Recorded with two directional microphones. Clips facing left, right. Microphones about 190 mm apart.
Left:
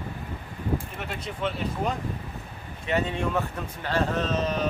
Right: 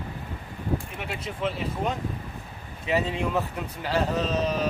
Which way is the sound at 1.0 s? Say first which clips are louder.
Right 1 dB; centre (ahead or behind).